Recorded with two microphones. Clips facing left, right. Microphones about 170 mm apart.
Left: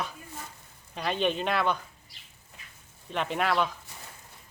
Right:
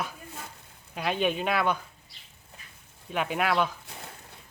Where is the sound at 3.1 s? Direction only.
5° right (ahead or behind).